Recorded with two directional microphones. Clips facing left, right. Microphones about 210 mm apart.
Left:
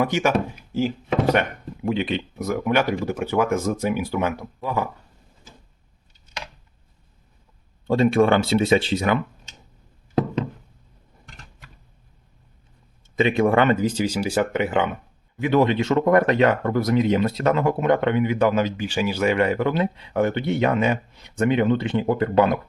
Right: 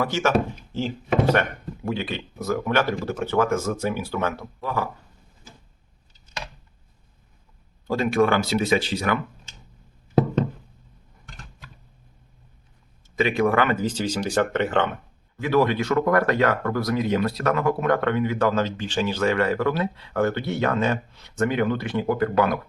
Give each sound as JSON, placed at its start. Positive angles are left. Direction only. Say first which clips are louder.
{"t": 0.0, "sound": "speech", "louder": "left 1 dB", "side_deg": 15}
{"t": 7.9, "sound": "speech", "louder": "left 3 dB", "side_deg": 25}
{"t": 13.1, "sound": "speech", "louder": "left 2 dB", "side_deg": 20}
{"t": 13.8, "sound": "speech", "louder": "left 3 dB", "side_deg": 10}
{"t": 15.4, "sound": "speech", "louder": "left 2 dB", "side_deg": 20}